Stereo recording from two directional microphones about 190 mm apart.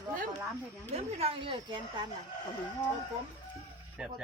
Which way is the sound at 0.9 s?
30° right (ahead or behind).